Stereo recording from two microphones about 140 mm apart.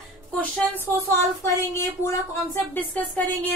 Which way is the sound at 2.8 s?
10° left (ahead or behind).